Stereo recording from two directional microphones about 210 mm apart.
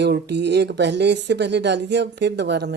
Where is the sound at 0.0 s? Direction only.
55° right (ahead or behind).